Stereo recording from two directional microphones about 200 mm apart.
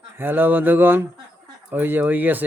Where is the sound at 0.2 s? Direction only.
10° right (ahead or behind).